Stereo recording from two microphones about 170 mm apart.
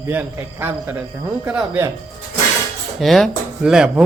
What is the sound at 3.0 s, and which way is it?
A man's voice, centre (ahead or behind).